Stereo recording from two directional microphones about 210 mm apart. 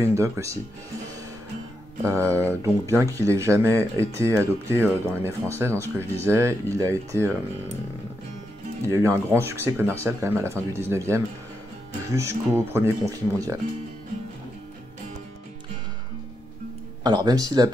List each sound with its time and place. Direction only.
0.0 s speech: 15° right (ahead or behind)
2.0 s speech: 15° right (ahead or behind)
8.8 s speech: 15° right (ahead or behind)
17.0 s speech: 20° right (ahead or behind)